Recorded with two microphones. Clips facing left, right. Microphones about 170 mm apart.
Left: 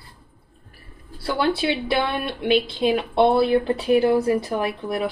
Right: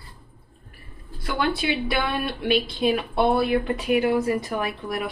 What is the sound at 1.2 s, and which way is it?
Speech, 30° left (ahead or behind).